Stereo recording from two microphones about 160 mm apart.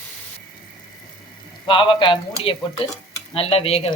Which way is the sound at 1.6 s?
30° left (ahead or behind).